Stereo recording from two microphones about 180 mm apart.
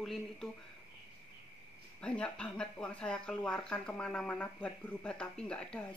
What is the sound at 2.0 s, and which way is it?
Speech, 5° left (ahead or behind).